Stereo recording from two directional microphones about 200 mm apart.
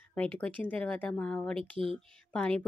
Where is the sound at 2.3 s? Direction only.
5° left (ahead or behind).